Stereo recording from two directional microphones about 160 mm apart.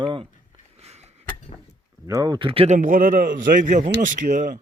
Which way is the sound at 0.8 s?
40° right (ahead or behind).